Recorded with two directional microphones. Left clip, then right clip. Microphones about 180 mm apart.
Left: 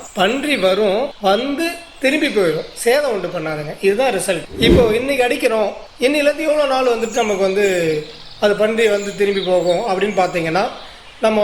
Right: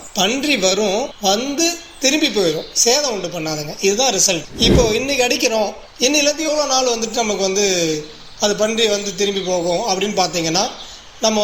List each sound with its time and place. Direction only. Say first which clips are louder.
0.2 s speech: left 1 dB; 25° right (ahead or behind)